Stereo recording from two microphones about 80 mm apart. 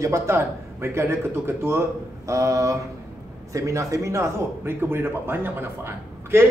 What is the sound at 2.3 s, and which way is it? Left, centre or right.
Speech, right.